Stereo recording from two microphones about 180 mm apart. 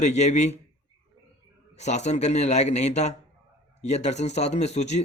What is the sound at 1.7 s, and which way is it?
A man's voice, 40° left (ahead or behind).